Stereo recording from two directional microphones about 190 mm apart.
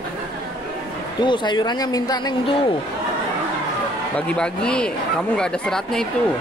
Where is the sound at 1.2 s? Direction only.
25° left (ahead or behind).